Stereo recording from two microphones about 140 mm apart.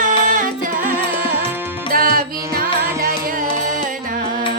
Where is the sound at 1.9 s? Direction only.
90° right; by 4.4 s 70° right (ahead or behind).